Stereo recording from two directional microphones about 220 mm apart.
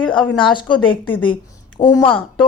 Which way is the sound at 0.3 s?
20° left (ahead or behind).